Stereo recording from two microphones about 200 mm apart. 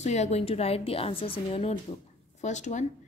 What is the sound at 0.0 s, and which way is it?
A woman's voice, 35° left (ahead or behind).